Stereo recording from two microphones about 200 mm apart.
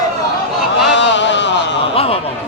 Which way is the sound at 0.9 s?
65° left (ahead or behind).